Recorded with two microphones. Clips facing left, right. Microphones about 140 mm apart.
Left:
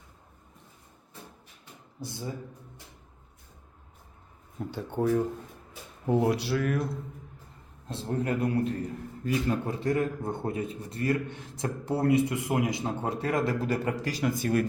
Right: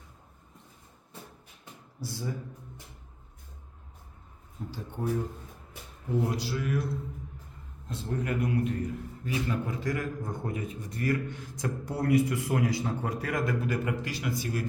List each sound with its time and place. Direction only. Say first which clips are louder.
2.0 s a man's voice: even; 20° left (ahead or behind)
4.7 s a man's voice: left 6 dB; 65° left (ahead or behind)
7.9 s a man's voice: left 3 dB; 30° left (ahead or behind); by 14.6 s 50° left (ahead or behind)